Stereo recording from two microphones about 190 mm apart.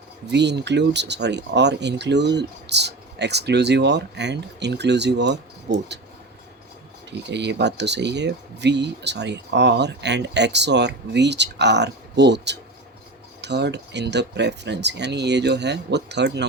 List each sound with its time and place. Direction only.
0.3 s speech: 65° right (ahead or behind)
7.1 s speech: 65° right (ahead or behind)